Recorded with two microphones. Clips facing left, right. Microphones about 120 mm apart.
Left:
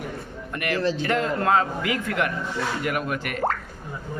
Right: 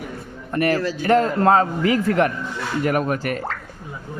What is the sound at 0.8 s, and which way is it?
Speech, 30° left (ahead or behind).